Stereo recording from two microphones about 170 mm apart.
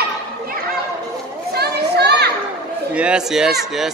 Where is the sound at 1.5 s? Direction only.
75° right (ahead or behind).